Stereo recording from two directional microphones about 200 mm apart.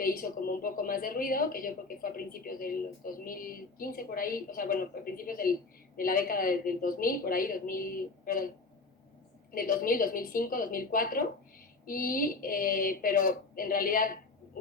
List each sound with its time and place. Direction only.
0.0 s a woman's voice: 45° left (ahead or behind)
9.5 s a woman's voice: 45° left (ahead or behind)